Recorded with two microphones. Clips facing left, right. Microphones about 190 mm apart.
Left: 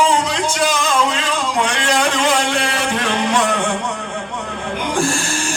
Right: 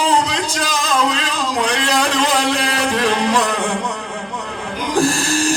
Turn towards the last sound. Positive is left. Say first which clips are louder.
# right 4 dB
turn(degrees=-35)  # may be behind; listen again after turning